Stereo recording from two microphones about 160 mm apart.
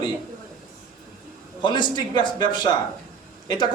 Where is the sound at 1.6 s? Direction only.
30° left (ahead or behind).